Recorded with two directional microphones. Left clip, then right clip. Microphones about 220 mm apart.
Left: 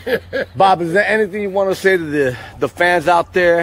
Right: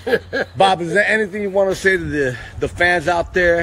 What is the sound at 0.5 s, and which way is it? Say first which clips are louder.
A man's voice: left 2 dB; 20° left (ahead or behind).